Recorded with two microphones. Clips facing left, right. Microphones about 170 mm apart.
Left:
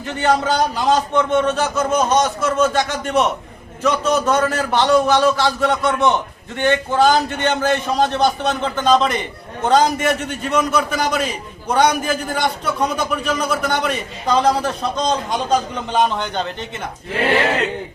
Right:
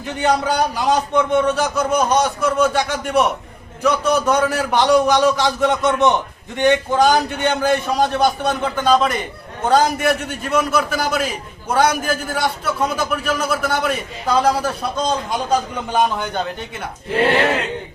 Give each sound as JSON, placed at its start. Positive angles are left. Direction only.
{"t": 0.0, "sound": "a man's voice", "side_deg": -15}